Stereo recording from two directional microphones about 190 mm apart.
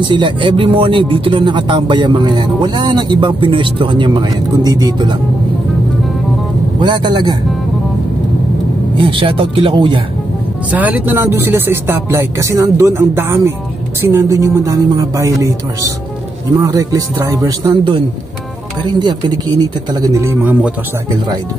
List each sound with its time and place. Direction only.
0.1 s speech: 25° right (ahead or behind)
6.8 s speech: 25° right (ahead or behind)
8.9 s speech: 25° right (ahead or behind)
10.7 s speech: 10° right (ahead or behind)